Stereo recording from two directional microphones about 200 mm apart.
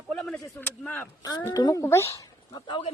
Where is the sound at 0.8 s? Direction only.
5° left (ahead or behind).